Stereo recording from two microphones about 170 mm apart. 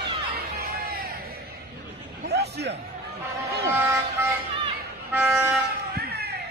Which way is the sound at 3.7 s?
10° right (ahead or behind).